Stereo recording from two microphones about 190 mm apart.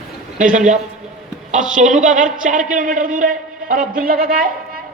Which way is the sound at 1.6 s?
45° right (ahead or behind).